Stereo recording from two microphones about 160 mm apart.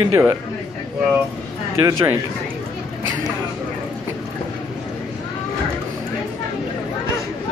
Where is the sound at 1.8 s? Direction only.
20° right (ahead or behind).